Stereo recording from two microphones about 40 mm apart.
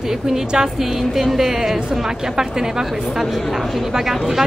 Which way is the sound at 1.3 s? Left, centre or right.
Centre.